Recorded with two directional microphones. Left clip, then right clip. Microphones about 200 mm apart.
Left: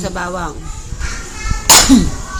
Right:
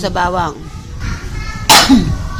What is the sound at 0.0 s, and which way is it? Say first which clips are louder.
Speech: right 6 dB; 50° right (ahead or behind).